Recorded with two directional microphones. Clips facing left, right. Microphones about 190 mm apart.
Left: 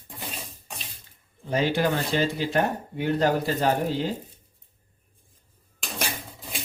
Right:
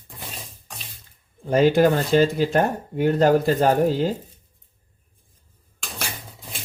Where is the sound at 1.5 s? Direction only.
45° right (ahead or behind).